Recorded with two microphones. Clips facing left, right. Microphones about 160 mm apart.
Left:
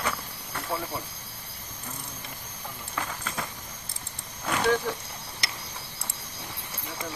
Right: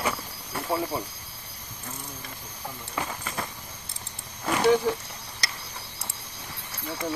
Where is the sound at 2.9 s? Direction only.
10° right (ahead or behind).